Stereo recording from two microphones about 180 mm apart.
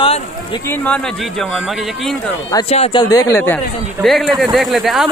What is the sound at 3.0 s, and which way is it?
Speech, 20° left (ahead or behind).